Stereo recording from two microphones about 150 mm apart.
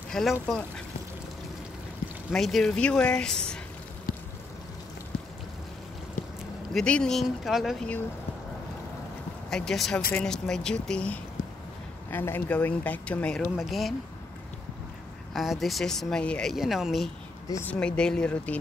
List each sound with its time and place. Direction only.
0.1 s speech: centre (ahead or behind)
2.3 s speech: centre (ahead or behind)
6.7 s speech: 5° left (ahead or behind)
9.5 s speech: 5° left (ahead or behind)
11.4 s a sound: 60° left (ahead or behind)
12.1 s speech: 15° left (ahead or behind)
15.3 s speech: centre (ahead or behind)